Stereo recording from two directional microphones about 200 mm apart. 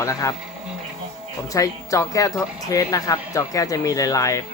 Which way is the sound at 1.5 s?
15° left (ahead or behind).